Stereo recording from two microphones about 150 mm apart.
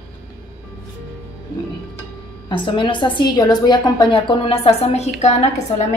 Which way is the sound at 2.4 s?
30° left (ahead or behind).